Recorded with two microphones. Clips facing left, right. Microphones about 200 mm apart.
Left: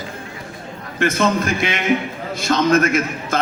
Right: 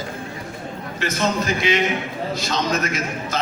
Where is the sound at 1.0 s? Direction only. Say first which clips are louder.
Left 5 dB; 55° left (ahead or behind).